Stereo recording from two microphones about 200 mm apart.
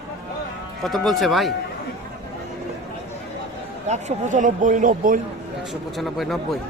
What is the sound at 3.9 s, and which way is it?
Speech, 35° right (ahead or behind).